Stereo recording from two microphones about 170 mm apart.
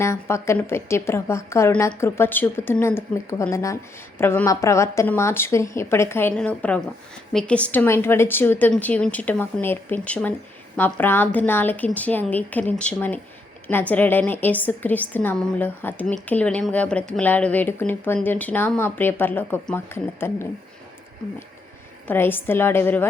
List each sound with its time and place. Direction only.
0.0 s speech: 15° left (ahead or behind)
22.0 s speech: 10° left (ahead or behind)